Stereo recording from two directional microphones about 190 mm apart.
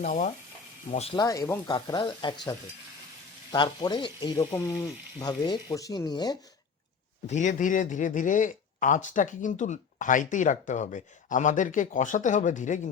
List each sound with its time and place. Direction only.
0.0 s speech: 40° left (ahead or behind)
1.1 s speech: 20° left (ahead or behind)
7.3 s speech: 40° left (ahead or behind)